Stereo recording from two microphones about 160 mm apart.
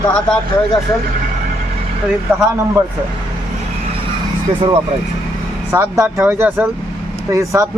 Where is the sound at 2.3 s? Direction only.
15° right (ahead or behind).